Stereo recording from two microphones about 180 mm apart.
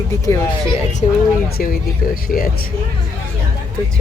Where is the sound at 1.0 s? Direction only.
35° left (ahead or behind).